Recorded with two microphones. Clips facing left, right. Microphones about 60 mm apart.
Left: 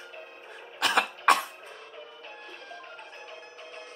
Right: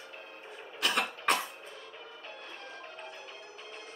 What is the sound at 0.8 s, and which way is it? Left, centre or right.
Cough, left.